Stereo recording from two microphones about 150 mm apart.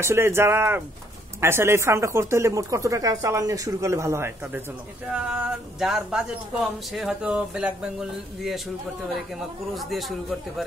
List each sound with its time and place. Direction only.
0.0 s speech: 15° right (ahead or behind); by 8.5 s centre (ahead or behind)
9.8 s speech: centre (ahead or behind)